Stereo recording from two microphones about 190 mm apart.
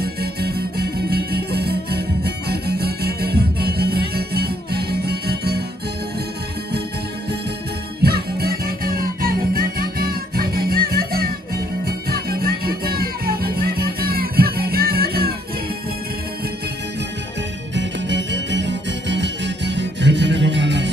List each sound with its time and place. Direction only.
0.0 s music: 55° right (ahead or behind)
8.0 s music: 55° right (ahead or behind)
17.7 s music: 70° right (ahead or behind)